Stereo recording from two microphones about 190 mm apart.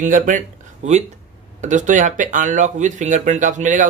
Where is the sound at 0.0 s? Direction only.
40° right (ahead or behind).